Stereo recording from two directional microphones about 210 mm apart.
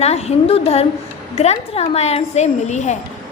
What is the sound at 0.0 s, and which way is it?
A woman's voice, 30° left (ahead or behind).